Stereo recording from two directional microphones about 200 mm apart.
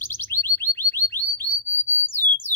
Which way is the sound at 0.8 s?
10° left (ahead or behind).